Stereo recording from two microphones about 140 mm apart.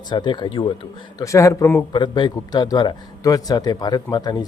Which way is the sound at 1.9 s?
35° left (ahead or behind).